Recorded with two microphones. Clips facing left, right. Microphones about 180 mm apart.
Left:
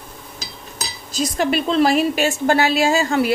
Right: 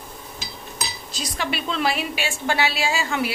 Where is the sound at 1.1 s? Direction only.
45° left (ahead or behind).